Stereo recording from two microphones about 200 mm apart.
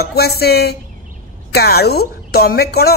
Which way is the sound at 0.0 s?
50° left (ahead or behind).